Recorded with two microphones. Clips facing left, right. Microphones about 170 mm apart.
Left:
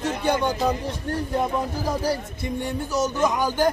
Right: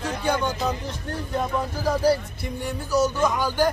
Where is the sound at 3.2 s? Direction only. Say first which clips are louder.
Left 1 dB; 15° left (ahead or behind).